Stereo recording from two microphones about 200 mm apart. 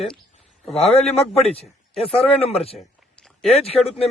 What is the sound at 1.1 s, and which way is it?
A man's voice, 30° left (ahead or behind).